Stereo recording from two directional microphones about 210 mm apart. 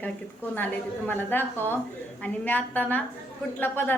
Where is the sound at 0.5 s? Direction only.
10° left (ahead or behind).